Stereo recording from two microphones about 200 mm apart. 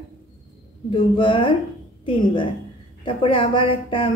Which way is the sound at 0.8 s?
25° left (ahead or behind).